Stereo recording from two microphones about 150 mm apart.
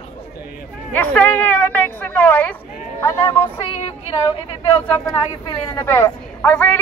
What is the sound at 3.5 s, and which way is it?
A woman's voice, 40° left (ahead or behind).